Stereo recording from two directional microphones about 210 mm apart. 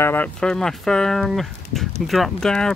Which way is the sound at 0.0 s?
10° left (ahead or behind).